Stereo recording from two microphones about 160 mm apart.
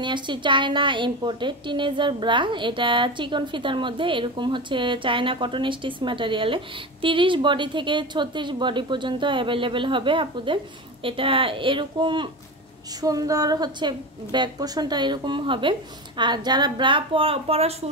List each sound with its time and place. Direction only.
0.0 s a woman's voice: 30° right (ahead or behind)